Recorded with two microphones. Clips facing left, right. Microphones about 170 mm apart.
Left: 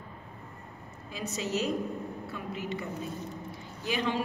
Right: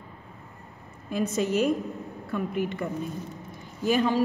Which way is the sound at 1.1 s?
50° right (ahead or behind).